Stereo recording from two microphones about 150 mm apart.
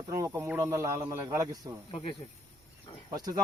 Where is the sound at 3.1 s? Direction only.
25° right (ahead or behind).